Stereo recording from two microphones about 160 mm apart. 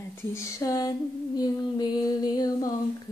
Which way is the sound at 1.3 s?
25° left (ahead or behind).